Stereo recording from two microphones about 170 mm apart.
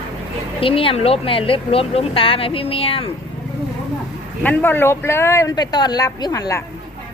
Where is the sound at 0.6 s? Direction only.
30° left (ahead or behind).